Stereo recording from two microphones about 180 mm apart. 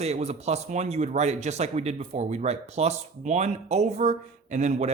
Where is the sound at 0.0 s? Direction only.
35° right (ahead or behind).